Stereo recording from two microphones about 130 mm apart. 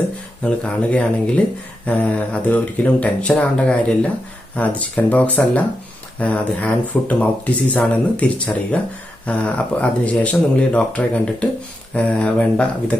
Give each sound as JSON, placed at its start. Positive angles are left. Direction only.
{"t": 0.4, "sound": "speech", "side_deg": 10}